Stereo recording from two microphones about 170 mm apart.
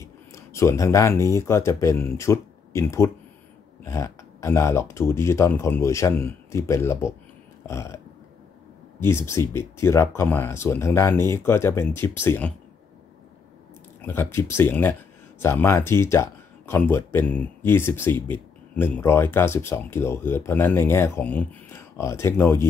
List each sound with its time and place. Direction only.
0.0 s speech: 15° left (ahead or behind)
9.0 s speech: 15° left (ahead or behind)
14.0 s speech: 10° left (ahead or behind)